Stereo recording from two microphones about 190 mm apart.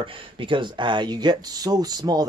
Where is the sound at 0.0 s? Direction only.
25° right (ahead or behind).